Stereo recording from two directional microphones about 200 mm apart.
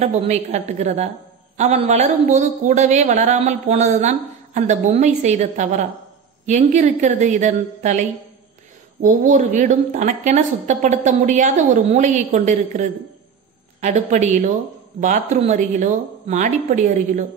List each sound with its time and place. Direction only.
0.0 s a woman's voice: 35° right (ahead or behind)
9.0 s a woman's voice: 40° right (ahead or behind)